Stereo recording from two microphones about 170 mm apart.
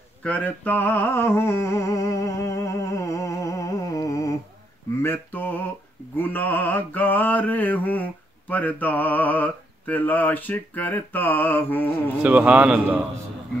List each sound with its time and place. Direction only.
0.2 s a sound: 10° left (ahead or behind)
5.0 s mantra: 10° left (ahead or behind)
12.2 s a man's voice: 10° right (ahead or behind)